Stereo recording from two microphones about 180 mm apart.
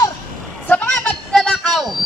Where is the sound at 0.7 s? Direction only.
5° left (ahead or behind).